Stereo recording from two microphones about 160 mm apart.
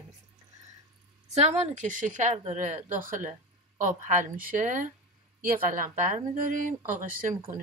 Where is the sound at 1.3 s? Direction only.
45° right (ahead or behind).